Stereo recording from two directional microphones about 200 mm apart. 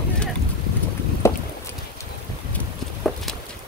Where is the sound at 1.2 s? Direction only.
15° left (ahead or behind).